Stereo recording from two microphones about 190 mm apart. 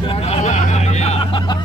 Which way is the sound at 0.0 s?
30° left (ahead or behind).